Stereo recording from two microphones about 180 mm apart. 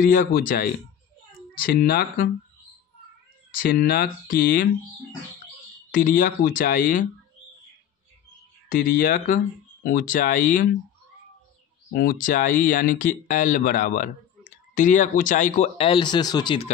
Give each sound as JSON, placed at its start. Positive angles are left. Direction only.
{"t": 0.0, "sound": "speech", "side_deg": 55}
{"t": 1.7, "sound": "speech", "side_deg": 60}
{"t": 3.5, "sound": "speech", "side_deg": 55}
{"t": 5.9, "sound": "speech", "side_deg": 50}
{"t": 8.6, "sound": "speech", "side_deg": 55}
{"t": 11.9, "sound": "speech", "side_deg": 55}